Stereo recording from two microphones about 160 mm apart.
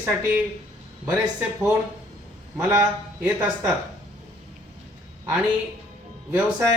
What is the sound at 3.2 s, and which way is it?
Speech, 5° right (ahead or behind).